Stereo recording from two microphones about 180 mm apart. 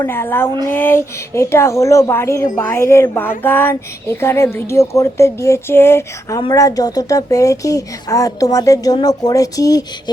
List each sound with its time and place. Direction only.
0.0 s speech: 15° left (ahead or behind)